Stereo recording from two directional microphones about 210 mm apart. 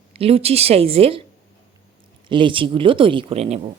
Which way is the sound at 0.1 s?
30° right (ahead or behind).